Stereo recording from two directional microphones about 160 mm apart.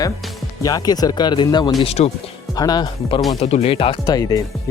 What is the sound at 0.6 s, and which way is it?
Speech, 25° left (ahead or behind).